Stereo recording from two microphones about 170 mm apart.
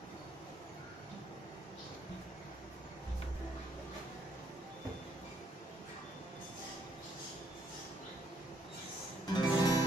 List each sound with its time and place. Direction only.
9.3 s music: 25° left (ahead or behind)